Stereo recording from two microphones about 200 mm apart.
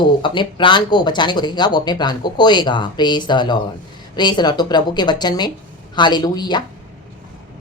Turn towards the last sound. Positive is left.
turn(degrees=20)  # may be behind; listen again after turning